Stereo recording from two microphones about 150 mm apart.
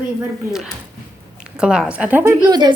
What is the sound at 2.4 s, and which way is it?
Speech, 30° right (ahead or behind).